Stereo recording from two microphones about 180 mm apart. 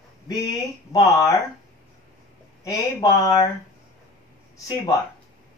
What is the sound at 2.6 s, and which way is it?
Speech, 20° left (ahead or behind).